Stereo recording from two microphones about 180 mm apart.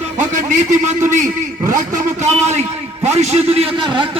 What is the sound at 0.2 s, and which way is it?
A man's voice, 45° right (ahead or behind).